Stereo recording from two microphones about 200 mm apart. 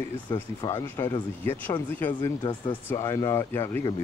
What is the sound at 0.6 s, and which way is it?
Speech, 15° left (ahead or behind).